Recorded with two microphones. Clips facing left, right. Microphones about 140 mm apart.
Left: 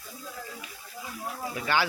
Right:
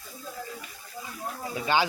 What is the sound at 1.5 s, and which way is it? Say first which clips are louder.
Speech: right 2 dB; 20° right (ahead or behind).